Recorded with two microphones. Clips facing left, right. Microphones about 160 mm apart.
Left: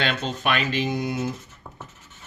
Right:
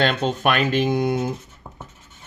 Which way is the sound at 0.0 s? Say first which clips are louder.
Right 6 dB; 45° right (ahead or behind).